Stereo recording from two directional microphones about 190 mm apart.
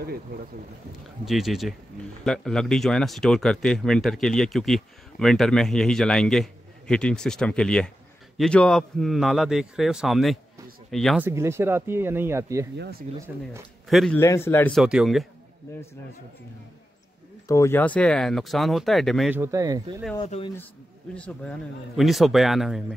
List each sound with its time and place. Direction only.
1.2 s speech: centre (ahead or behind)
11.2 s speech: 15° right (ahead or behind)
13.8 s speech: centre (ahead or behind)
14.1 s a man's voice: 15° left (ahead or behind)
14.7 s speech: centre (ahead or behind)
17.5 s speech: 15° left (ahead or behind)
19.3 s speech: 15° right (ahead or behind)
20.2 s speech: 30° left (ahead or behind)
21.1 s speech: 5° left (ahead or behind)